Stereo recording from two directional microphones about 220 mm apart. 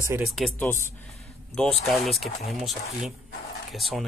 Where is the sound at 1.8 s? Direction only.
Centre (ahead or behind).